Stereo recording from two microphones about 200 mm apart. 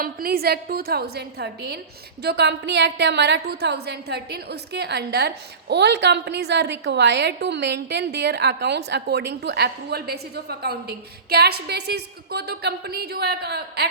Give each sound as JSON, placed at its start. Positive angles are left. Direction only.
{"t": 0.0, "sound": "a woman's voice", "side_deg": -50}